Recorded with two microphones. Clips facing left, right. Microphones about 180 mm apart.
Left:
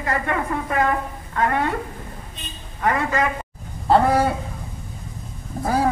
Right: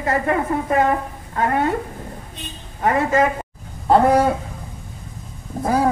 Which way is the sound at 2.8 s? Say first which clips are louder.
Right 4 dB; 30° right (ahead or behind).